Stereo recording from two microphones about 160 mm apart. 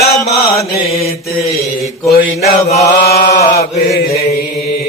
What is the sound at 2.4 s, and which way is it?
Chant, 45° left (ahead or behind).